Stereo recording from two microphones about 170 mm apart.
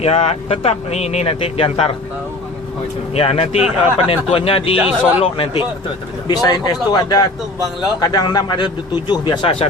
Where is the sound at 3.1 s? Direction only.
35° left (ahead or behind).